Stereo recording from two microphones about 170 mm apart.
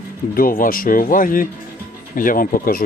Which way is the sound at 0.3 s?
55° left (ahead or behind).